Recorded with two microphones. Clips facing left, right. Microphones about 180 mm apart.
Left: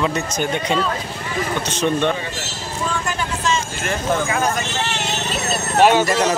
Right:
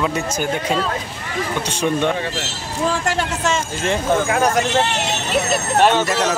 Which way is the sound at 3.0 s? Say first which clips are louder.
Right 4 dB; 85° right.